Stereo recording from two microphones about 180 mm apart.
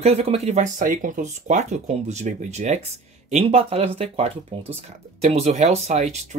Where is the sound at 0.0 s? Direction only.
35° right (ahead or behind).